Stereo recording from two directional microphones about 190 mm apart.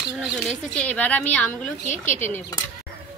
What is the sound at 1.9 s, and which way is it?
Speech, 40° left (ahead or behind).